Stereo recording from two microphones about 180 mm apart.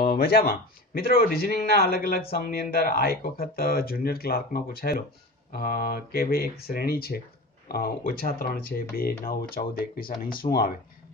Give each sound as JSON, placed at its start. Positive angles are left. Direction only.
{"t": 0.0, "sound": "speech", "side_deg": 60}